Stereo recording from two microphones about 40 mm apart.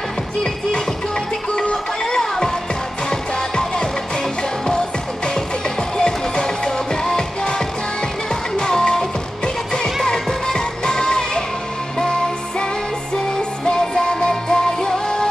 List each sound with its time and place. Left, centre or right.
0.4 s music: centre
10.0 s music: centre
13.7 s music: left